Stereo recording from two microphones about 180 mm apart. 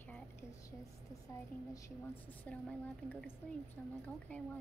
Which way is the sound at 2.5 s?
10° left (ahead or behind).